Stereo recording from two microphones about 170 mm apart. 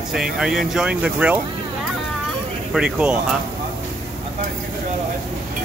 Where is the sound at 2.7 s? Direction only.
5° right (ahead or behind).